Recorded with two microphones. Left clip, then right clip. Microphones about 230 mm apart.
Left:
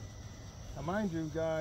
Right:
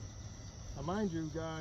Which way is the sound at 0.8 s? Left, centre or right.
Left.